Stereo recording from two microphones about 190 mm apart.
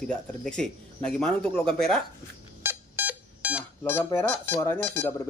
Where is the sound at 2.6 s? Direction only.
10° right (ahead or behind).